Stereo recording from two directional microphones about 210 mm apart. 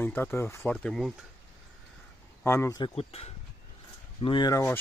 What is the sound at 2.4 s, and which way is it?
Speech, 10° left (ahead or behind).